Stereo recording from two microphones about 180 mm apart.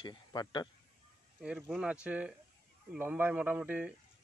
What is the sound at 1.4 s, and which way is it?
Speech, 5° right (ahead or behind).